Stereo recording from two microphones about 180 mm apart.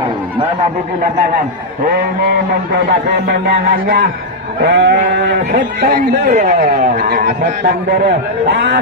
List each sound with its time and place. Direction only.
2.9 s speech: 65° right (ahead or behind)
4.6 s sheep: 70° right (ahead or behind)
5.5 s speech: 50° right (ahead or behind)